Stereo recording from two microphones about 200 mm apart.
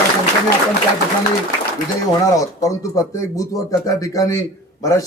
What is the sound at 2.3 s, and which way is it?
A man's voice, 15° left (ahead or behind).